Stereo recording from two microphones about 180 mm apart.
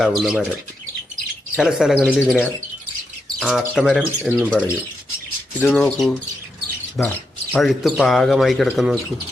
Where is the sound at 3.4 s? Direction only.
5° right (ahead or behind).